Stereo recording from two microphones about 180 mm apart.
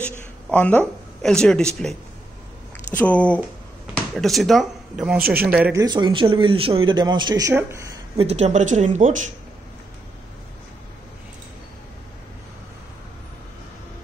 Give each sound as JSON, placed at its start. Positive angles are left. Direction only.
{"t": 0.5, "sound": "speech", "side_deg": 10}
{"t": 5.2, "sound": "speech", "side_deg": -55}
{"t": 5.5, "sound": "speech", "side_deg": -10}
{"t": 8.2, "sound": "a woman's voice", "side_deg": -35}